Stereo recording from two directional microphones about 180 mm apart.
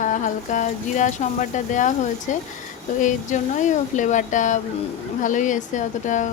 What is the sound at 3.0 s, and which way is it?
A woman's voice, 45° left (ahead or behind).